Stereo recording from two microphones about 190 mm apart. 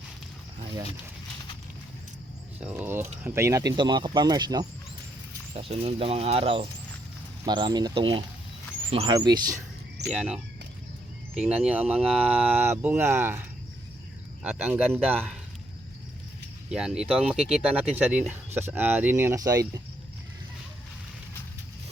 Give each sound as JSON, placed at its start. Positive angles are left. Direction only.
{"t": 2.6, "sound": "speech", "side_deg": -10}
{"t": 9.1, "sound": "speech", "side_deg": -20}
{"t": 10.1, "sound": "speech", "side_deg": -5}
{"t": 14.7, "sound": "speech", "side_deg": -10}
{"t": 16.6, "sound": "speech", "side_deg": -5}